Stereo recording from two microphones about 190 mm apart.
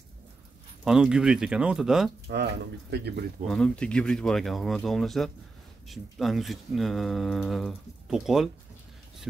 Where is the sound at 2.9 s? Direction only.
60° right (ahead or behind).